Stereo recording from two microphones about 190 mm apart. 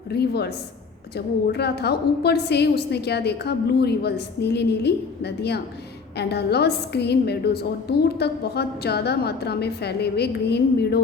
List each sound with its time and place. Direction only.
0.1 s a woman's voice: 60° left (ahead or behind)